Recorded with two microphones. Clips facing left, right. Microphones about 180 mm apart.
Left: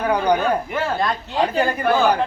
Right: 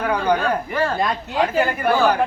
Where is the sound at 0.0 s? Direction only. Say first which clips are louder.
Left 1 dB; 15° left (ahead or behind).